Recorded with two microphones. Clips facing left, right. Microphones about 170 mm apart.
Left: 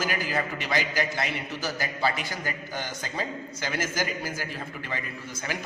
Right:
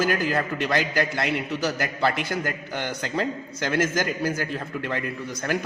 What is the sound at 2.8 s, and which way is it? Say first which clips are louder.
A man's voice: right 9 dB; 60° right (ahead or behind).